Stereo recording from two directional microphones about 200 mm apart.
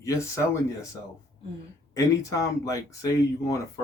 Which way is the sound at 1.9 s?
15° left (ahead or behind).